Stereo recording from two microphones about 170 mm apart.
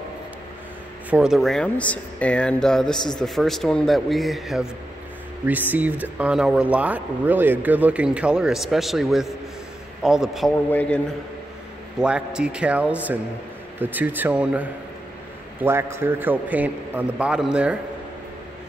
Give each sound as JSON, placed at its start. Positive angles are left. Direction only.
{"t": 1.1, "sound": "speech", "side_deg": -5}
{"t": 10.7, "sound": "a man's voice", "side_deg": 10}
{"t": 12.0, "sound": "speech", "side_deg": -5}